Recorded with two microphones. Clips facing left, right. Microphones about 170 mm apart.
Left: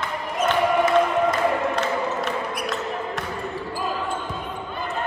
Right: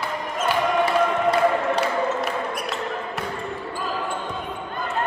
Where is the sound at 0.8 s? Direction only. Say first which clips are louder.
Left 1 dB; 35° right (ahead or behind).